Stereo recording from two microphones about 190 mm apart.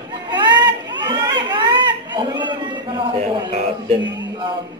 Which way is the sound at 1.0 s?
25° right (ahead or behind).